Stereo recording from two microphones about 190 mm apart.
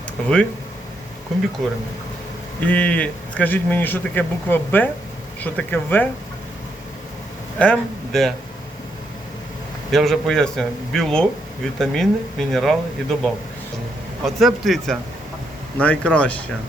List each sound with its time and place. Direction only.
0.2 s speech: 5° left (ahead or behind)
1.6 s speech: centre (ahead or behind)
7.6 s speech: 5° left (ahead or behind)
9.9 s speech: centre (ahead or behind)